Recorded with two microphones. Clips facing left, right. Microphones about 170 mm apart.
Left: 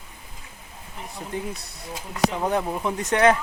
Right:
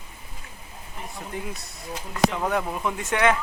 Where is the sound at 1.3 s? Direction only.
35° left (ahead or behind).